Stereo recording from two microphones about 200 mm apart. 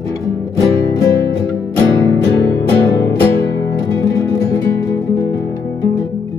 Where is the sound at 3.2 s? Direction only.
15° left (ahead or behind).